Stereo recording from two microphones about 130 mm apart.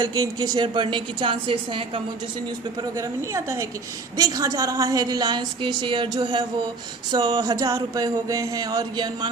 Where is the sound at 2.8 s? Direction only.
25° right (ahead or behind).